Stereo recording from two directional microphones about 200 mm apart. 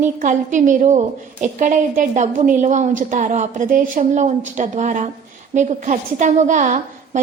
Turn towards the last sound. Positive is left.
turn(degrees=-35)  # may be behind; listen again after turning